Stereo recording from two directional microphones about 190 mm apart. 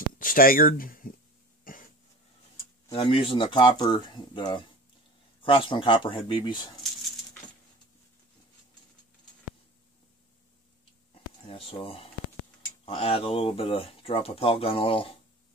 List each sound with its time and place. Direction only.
0.2 s speech: 50° left (ahead or behind)
1.7 s throat clearing: 45° left (ahead or behind)
2.9 s speech: 25° left (ahead or behind)
11.4 s speech: 30° left (ahead or behind)